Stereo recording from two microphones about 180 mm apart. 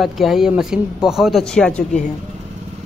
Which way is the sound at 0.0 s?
Centre (ahead or behind).